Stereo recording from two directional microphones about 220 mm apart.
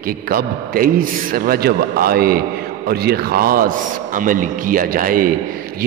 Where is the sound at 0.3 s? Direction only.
40° right (ahead or behind).